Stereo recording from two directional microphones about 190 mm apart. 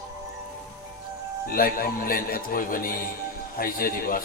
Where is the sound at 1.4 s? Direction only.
50° left (ahead or behind).